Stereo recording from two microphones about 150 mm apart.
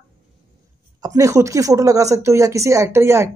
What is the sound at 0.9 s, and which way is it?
Speech, 25° right (ahead or behind).